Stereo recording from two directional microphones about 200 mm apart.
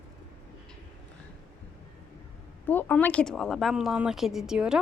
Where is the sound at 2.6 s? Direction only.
10° left (ahead or behind).